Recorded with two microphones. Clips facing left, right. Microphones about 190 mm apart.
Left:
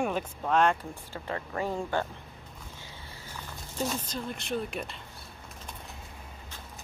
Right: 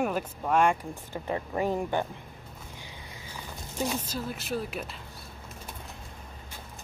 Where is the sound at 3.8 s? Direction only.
10° right (ahead or behind).